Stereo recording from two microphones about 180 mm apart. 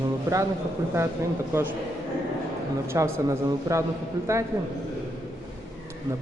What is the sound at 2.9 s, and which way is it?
Speech, 15° right (ahead or behind).